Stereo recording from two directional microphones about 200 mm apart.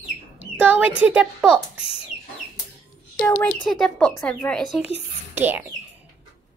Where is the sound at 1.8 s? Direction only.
30° left (ahead or behind).